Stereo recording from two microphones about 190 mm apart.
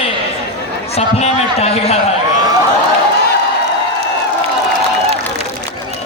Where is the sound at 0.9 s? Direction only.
35° left (ahead or behind).